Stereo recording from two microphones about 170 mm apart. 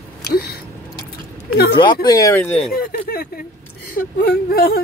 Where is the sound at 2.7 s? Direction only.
60° left (ahead or behind).